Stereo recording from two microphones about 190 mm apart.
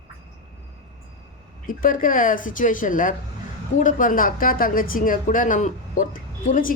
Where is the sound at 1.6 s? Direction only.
45° left (ahead or behind).